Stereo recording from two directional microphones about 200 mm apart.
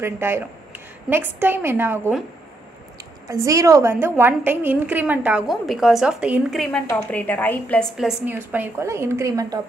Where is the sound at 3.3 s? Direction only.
15° right (ahead or behind).